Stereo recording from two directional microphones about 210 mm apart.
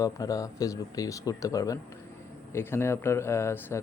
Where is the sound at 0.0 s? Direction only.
15° left (ahead or behind).